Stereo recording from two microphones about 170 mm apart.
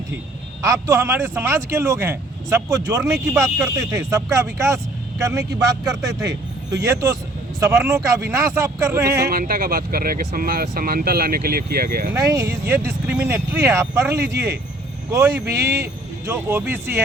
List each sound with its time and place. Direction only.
0.6 s speech: 20° right (ahead or behind)
9.3 s speech: 60° right (ahead or behind)
12.1 s speech: 20° right (ahead or behind)